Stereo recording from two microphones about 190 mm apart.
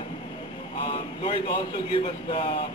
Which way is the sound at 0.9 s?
25° left (ahead or behind).